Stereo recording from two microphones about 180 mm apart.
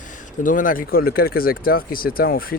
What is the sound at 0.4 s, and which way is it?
Speech, 50° left (ahead or behind).